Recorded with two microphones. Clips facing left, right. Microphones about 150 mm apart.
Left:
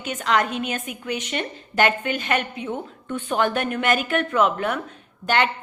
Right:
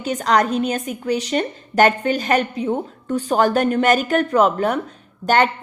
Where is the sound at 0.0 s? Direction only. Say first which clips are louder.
Right 4 dB; 35° right (ahead or behind).